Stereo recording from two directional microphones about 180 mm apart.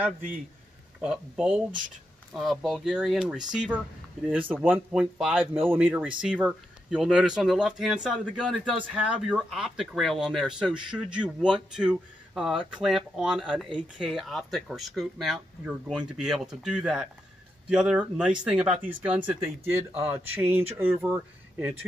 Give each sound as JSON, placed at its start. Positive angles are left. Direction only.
{"t": 1.0, "sound": "speech", "side_deg": -5}